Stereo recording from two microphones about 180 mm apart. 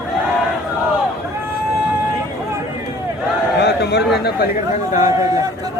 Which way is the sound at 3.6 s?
65° left (ahead or behind).